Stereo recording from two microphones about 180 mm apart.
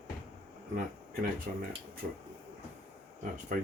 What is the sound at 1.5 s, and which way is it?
Speech, 50° right (ahead or behind).